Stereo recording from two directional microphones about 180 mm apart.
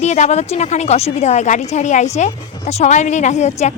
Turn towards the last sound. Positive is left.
turn(degrees=40)  # may be behind; listen again after turning